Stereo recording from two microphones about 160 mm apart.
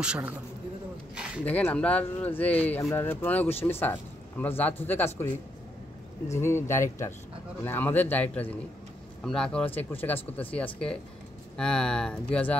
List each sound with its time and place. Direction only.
0.0 s speech: 5° right (ahead or behind)
1.1 s a sound: 5° right (ahead or behind)
1.4 s speech: 10° left (ahead or behind)